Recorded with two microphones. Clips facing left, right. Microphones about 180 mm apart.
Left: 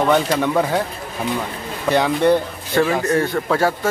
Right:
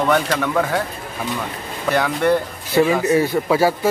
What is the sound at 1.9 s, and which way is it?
Speech, 20° left (ahead or behind).